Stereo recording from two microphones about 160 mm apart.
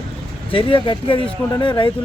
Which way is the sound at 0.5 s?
35° left (ahead or behind).